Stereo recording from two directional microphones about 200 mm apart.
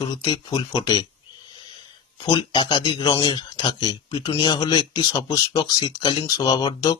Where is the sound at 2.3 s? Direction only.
20° left (ahead or behind).